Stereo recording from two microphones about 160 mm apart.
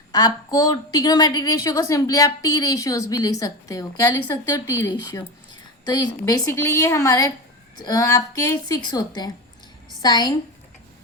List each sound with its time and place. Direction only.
0.1 s a woman's voice: 25° left (ahead or behind)